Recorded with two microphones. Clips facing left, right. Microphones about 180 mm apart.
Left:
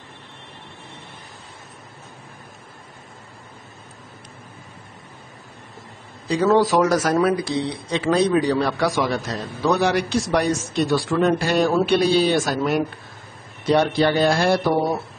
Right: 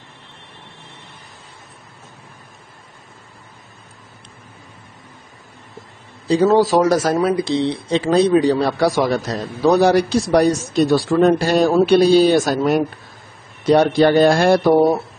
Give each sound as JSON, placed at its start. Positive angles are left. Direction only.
{"t": 6.2, "sound": "speech", "side_deg": -30}